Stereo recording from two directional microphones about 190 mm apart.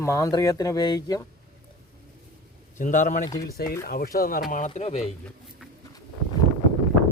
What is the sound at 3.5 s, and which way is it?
Speech, 55° left (ahead or behind).